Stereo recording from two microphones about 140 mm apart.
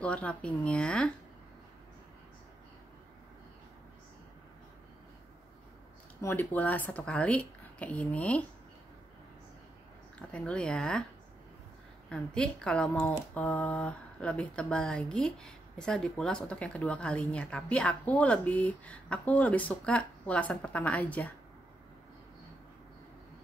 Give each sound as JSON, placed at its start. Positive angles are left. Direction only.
{"t": 0.0, "sound": "speech", "side_deg": 10}
{"t": 6.2, "sound": "speech", "side_deg": 10}
{"t": 10.1, "sound": "speech", "side_deg": 10}
{"t": 12.1, "sound": "speech", "side_deg": 5}